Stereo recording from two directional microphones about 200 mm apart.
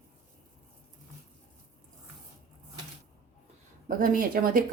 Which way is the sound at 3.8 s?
45° right (ahead or behind).